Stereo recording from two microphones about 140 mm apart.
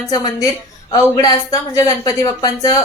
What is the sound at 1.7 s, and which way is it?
A woman's voice, 25° left (ahead or behind).